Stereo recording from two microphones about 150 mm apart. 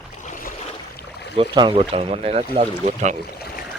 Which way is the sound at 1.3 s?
35° right (ahead or behind).